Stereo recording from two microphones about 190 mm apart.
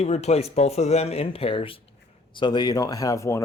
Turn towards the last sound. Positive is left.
turn(degrees=15)  # may be behind; listen again after turning